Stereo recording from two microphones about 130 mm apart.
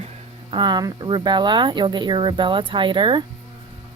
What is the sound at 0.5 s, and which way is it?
Speech, 35° right (ahead or behind).